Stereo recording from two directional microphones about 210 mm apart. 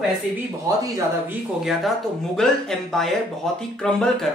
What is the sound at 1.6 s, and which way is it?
Speech, centre (ahead or behind).